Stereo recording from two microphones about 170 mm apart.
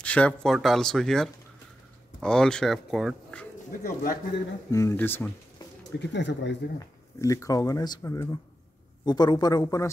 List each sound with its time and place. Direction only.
0.0 s speech: 10° left (ahead or behind)
3.8 s a man's voice: 55° left (ahead or behind)
4.6 s speech: 15° left (ahead or behind)
5.9 s speech: 90° left
7.2 s speech: 20° left (ahead or behind)